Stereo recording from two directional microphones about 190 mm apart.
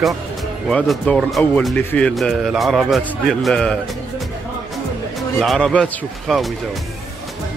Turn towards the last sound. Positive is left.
turn(degrees=0)  # may be behind; listen again after turning